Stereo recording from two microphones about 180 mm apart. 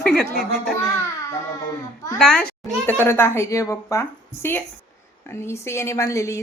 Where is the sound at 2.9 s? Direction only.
10° left (ahead or behind).